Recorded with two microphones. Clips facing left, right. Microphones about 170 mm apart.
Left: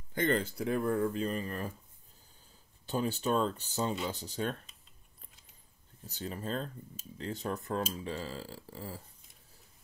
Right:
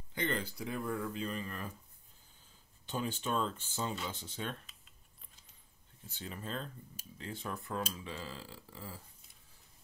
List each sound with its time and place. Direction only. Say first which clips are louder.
0.1 s speech: left 6 dB; 45° left (ahead or behind)
2.9 s speech: left 5 dB; 40° left (ahead or behind)
6.0 s speech: left 6 dB; 40° left (ahead or behind)